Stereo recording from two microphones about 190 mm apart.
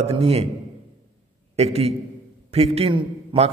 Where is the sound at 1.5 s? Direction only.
30° right (ahead or behind).